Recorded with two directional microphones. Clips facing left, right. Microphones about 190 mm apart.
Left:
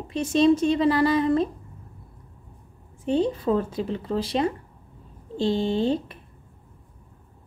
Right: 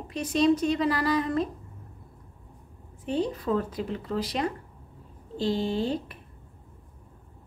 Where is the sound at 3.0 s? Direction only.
25° left (ahead or behind).